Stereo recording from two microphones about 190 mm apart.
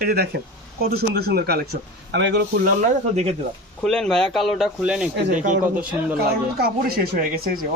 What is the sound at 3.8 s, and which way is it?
Speech, 5° left (ahead or behind).